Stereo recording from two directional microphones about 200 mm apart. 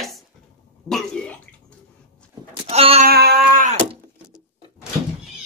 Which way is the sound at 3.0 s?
50° right (ahead or behind).